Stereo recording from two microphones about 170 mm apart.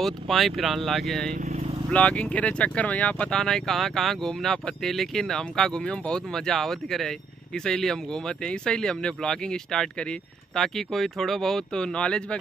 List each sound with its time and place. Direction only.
0.0 s speech: centre (ahead or behind)
1.4 s vehicle: 40° right (ahead or behind)
1.9 s speech: 5° left (ahead or behind)